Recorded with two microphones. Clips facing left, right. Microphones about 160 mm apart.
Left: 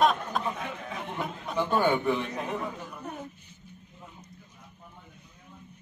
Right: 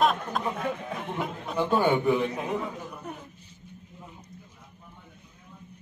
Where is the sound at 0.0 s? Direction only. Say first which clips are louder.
Even; centre (ahead or behind).